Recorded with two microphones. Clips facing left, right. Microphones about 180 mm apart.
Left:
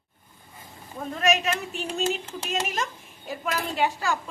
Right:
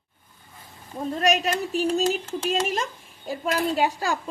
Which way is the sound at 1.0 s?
35° right (ahead or behind).